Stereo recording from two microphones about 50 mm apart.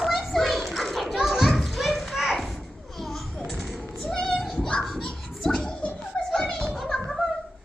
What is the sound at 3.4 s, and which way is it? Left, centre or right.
Music, centre.